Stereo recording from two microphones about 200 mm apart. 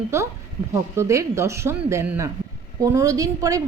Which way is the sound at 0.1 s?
15° right (ahead or behind).